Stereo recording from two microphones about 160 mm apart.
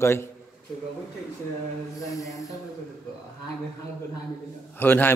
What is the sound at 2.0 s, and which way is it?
Speech, 20° left (ahead or behind).